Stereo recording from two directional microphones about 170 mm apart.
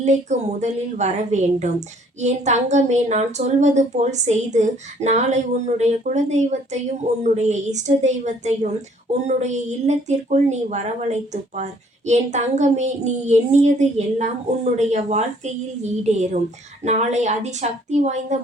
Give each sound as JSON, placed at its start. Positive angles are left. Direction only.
{"t": 0.0, "sound": "a woman's voice", "side_deg": -40}